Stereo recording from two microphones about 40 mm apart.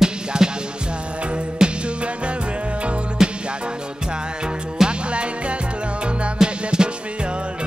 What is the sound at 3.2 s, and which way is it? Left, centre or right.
Music, centre.